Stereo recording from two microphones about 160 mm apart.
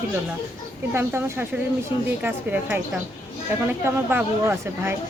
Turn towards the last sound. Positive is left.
turn(degrees=-15)  # may be behind; listen again after turning